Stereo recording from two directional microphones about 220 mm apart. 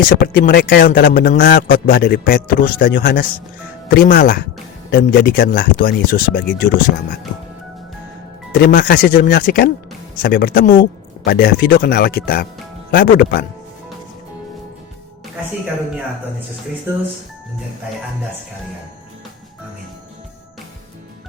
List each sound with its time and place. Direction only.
0.1 s speech: 45° left (ahead or behind)
8.5 s speech: 45° left (ahead or behind)